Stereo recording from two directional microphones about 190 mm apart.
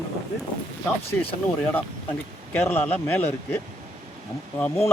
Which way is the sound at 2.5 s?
10° left (ahead or behind).